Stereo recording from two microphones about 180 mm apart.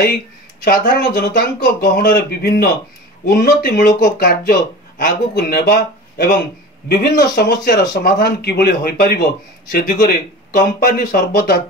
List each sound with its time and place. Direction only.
0.7 s a man's voice: 55° left (ahead or behind)
3.7 s a man's voice: 45° left (ahead or behind); by 11.5 s 65° left (ahead or behind)